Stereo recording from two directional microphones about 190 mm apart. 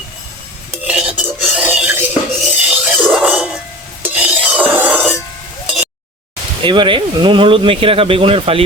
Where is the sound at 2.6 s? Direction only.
10° right (ahead or behind).